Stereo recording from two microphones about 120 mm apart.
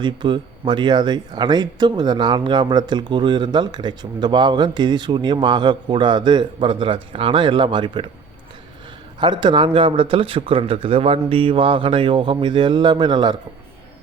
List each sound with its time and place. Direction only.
0.0 s speech: 40° right (ahead or behind)
9.2 s speech: 40° right (ahead or behind)